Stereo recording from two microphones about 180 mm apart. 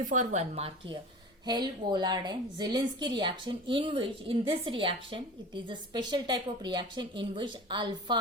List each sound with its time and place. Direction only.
0.0 s speech: 45° right (ahead or behind)
1.5 s a woman's voice: 25° right (ahead or behind)